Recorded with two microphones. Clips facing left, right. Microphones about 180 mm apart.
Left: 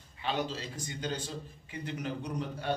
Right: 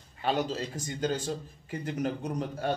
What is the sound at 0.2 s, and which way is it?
A man's voice, 45° right (ahead or behind).